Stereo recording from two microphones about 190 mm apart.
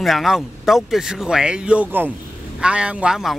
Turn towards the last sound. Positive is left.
turn(degrees=0)  # may be behind; listen again after turning